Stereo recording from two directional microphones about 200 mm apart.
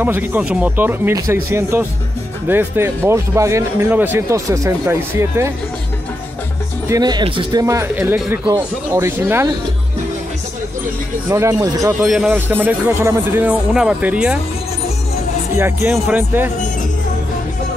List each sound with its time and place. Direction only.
0.0 s speech: 10° right (ahead or behind)
6.9 s speech: 20° right (ahead or behind)
11.2 s speech: 15° right (ahead or behind)
12.0 s speech: centre (ahead or behind)
15.5 s speech: 10° right (ahead or behind)